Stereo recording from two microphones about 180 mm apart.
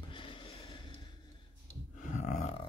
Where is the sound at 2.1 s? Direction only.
40° left (ahead or behind).